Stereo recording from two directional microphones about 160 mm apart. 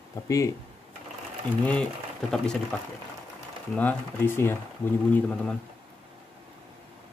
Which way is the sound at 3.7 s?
10° left (ahead or behind).